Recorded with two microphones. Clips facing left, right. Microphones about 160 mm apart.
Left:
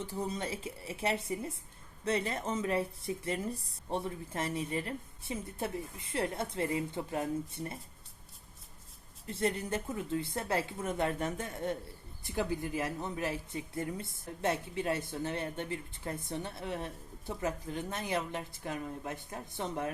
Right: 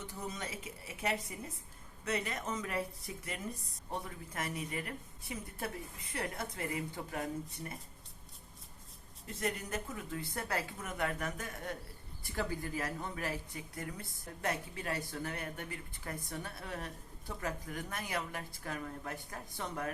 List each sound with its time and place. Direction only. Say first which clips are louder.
0.0 s speech: left 6 dB; 30° left (ahead or behind)
9.2 s speech: left 5 dB; 30° left (ahead or behind)